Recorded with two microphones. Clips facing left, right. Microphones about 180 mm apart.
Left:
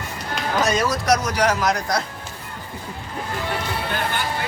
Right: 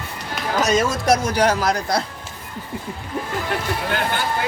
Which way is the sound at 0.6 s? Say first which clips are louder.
Right 3 dB; 20° right (ahead or behind).